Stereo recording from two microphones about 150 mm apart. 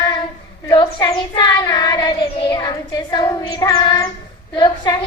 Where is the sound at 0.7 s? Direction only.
30° left (ahead or behind).